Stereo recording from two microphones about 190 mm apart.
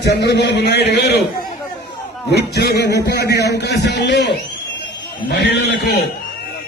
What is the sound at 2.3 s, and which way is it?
A man's voice, 60° left (ahead or behind).